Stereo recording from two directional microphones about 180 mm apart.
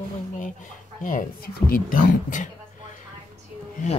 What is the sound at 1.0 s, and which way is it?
Speech, 50° left (ahead or behind).